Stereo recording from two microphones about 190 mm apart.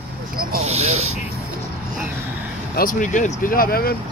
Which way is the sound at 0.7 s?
35° right (ahead or behind).